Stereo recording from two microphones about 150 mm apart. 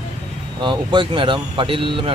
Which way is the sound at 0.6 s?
35° right (ahead or behind).